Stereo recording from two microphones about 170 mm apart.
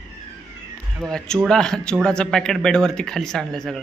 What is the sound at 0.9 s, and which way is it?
Speech, 5° left (ahead or behind).